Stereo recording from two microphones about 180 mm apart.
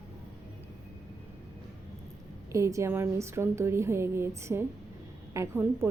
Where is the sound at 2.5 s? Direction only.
15° right (ahead or behind).